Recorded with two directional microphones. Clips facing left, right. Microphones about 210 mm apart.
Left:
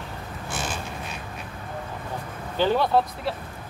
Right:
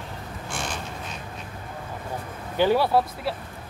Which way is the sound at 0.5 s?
5° left (ahead or behind).